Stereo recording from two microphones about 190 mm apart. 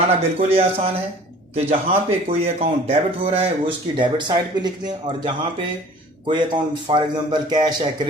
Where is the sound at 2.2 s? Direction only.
35° right (ahead or behind).